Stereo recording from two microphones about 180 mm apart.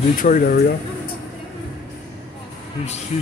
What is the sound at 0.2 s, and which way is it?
Speech, 50° left (ahead or behind).